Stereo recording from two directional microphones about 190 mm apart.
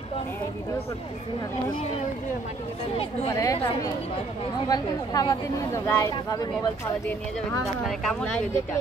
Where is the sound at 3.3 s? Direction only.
15° left (ahead or behind).